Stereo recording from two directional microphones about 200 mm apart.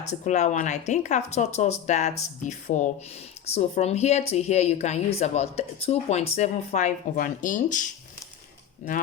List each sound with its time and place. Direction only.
0.1 s a woman's voice: 35° left (ahead or behind)